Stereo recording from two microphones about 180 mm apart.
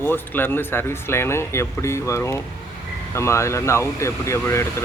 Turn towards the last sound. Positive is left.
turn(degrees=15)  # may be behind; listen again after turning